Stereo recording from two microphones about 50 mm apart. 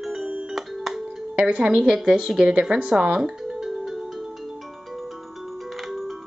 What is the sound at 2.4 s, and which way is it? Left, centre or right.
Speech, centre.